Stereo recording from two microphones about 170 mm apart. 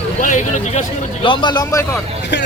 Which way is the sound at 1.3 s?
25° left (ahead or behind).